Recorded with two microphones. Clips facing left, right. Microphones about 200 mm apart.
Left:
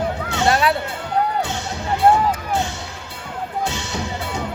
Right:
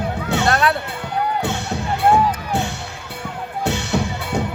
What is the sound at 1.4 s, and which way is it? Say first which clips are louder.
Music: right 3 dB; 65° right (ahead or behind).